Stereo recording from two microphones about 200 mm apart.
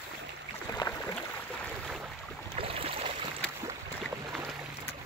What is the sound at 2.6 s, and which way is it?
Boat, 30° right (ahead or behind).